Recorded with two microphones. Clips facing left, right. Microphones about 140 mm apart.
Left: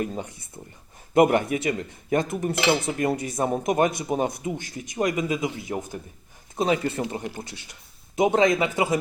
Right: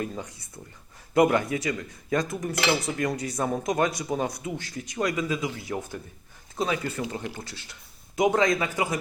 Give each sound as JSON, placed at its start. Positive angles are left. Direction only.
{"t": 0.1, "sound": "speech", "side_deg": 25}